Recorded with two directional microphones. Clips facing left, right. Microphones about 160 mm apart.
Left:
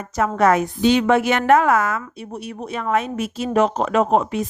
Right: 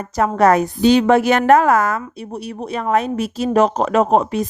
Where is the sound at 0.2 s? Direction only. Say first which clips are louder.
Right 3 dB; 35° right (ahead or behind).